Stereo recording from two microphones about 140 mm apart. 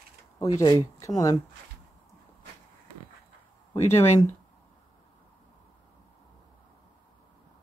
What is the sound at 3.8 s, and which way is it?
Speech, 55° left (ahead or behind).